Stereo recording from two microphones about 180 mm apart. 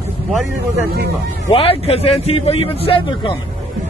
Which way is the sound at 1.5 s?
35° left (ahead or behind).